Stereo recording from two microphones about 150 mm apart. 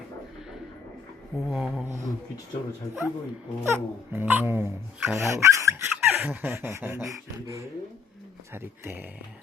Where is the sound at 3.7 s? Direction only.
15° right (ahead or behind).